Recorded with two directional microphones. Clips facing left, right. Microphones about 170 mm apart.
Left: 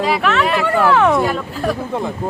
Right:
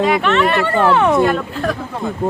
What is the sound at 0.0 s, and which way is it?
Speech, centre (ahead or behind).